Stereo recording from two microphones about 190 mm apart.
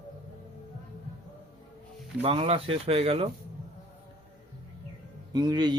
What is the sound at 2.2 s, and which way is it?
Speech, 30° right (ahead or behind).